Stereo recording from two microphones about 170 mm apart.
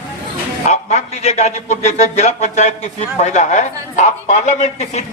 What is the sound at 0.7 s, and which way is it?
A man's voice, 40° left (ahead or behind).